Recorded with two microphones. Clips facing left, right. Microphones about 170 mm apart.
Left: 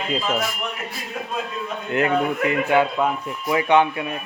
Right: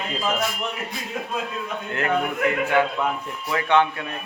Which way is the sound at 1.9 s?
20° left (ahead or behind).